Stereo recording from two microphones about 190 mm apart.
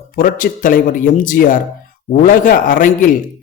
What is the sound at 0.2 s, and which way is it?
A man's voice, 45° left (ahead or behind).